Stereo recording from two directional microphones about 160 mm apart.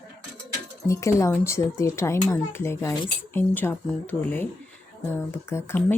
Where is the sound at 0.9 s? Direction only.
20° left (ahead or behind).